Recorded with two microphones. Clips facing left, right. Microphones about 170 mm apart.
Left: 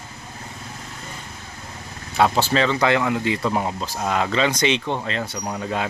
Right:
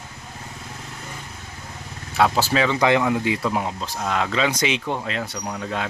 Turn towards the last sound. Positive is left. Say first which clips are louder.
# left 2 dB
turn(degrees=5)  # may be behind; listen again after turning